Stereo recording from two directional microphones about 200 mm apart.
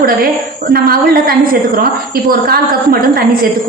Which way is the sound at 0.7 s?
50° right (ahead or behind).